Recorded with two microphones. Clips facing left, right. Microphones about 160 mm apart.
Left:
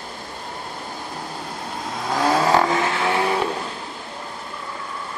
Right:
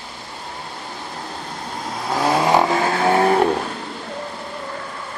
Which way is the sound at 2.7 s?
35° right (ahead or behind).